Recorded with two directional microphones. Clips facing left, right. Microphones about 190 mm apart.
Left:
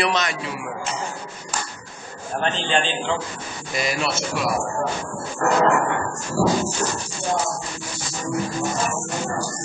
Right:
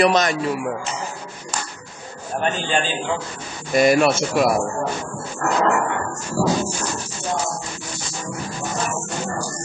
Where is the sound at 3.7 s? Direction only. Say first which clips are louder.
Right 9 dB; 50° right (ahead or behind).